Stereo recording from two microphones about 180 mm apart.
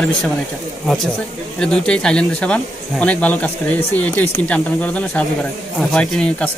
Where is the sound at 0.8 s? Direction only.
Centre (ahead or behind).